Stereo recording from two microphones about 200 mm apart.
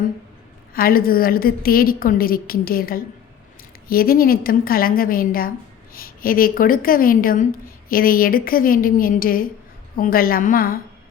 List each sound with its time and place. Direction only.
0.7 s a woman's voice: 45° left (ahead or behind)